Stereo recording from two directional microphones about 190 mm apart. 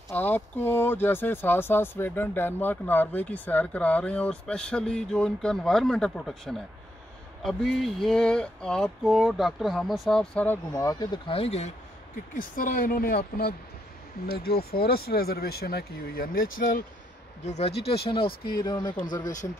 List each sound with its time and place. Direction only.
0.1 s speech: 10° left (ahead or behind)
7.4 s a sound: centre (ahead or behind)
10.7 s speech: 20° left (ahead or behind)
12.4 s speech: 45° left (ahead or behind)
17.5 s speech: 35° left (ahead or behind)